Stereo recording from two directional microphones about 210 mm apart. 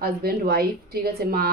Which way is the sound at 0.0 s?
45° right (ahead or behind).